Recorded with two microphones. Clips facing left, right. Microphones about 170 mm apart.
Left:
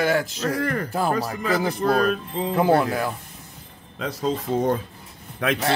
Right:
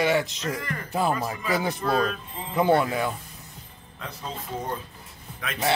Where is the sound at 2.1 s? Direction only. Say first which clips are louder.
Left 10 dB; 80° left.